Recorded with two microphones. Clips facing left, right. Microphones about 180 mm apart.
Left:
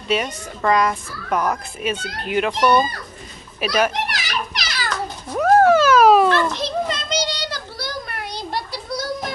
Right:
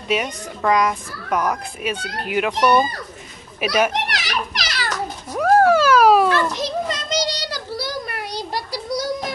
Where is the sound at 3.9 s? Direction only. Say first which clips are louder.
Right 1 dB; 70° right (ahead or behind).